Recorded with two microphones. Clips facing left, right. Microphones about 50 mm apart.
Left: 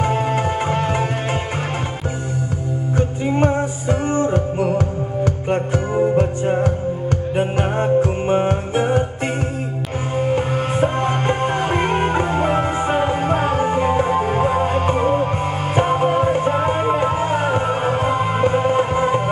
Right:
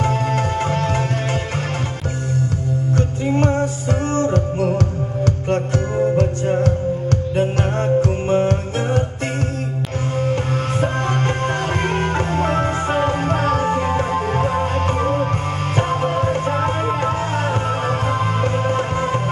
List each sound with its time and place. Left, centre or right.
0.0 s music: centre
3.0 s music: centre
10.1 s music: centre